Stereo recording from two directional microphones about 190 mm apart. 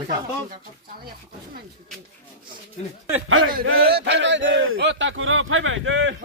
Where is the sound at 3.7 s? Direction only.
55° right (ahead or behind); by 6.2 s 80° right.